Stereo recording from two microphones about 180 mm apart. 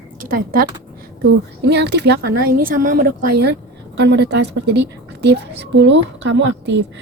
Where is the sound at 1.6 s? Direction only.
70° right (ahead or behind).